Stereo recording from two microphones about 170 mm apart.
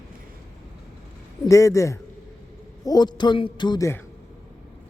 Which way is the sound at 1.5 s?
20° left (ahead or behind).